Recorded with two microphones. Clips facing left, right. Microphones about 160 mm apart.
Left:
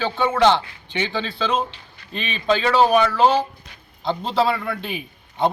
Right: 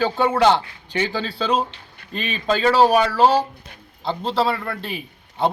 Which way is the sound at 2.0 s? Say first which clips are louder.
Right 2 dB; 40° right (ahead or behind).